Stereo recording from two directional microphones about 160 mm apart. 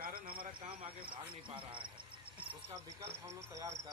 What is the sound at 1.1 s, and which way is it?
Speech, 30° right (ahead or behind).